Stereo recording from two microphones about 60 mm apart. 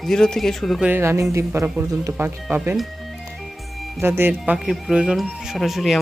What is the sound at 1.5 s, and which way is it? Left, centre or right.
Speech, right.